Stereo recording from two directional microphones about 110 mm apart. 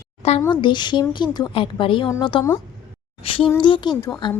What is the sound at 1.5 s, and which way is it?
A woman's voice, 50° left (ahead or behind).